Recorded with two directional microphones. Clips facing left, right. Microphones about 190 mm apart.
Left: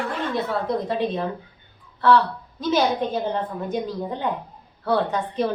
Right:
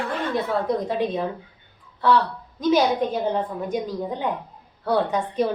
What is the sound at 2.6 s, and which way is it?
Speech, 10° right (ahead or behind).